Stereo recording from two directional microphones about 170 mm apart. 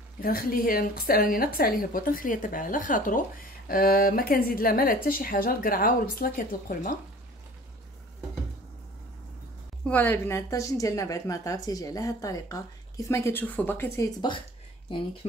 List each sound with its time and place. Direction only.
0.2 s speech: 60° left (ahead or behind)
9.8 s a woman's voice: 10° left (ahead or behind)